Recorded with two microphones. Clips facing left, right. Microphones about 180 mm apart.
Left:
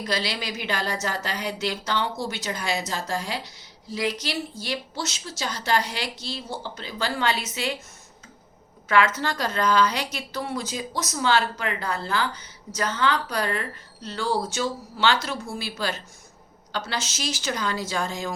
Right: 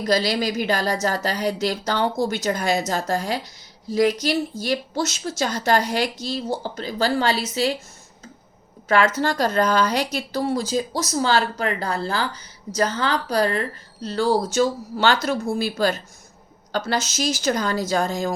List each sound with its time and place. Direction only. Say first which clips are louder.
0.0 s a woman's voice: right 8 dB; 40° right (ahead or behind)
8.9 s a woman's voice: right 3 dB; 35° right (ahead or behind)